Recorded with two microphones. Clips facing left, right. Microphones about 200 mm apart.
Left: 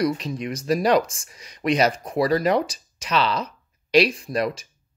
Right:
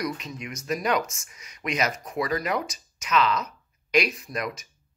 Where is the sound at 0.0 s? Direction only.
30° left (ahead or behind).